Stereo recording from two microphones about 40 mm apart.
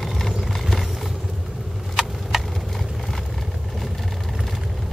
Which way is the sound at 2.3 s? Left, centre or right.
Centre.